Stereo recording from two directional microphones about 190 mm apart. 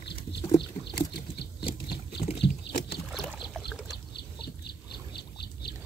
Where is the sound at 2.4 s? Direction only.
60° left (ahead or behind).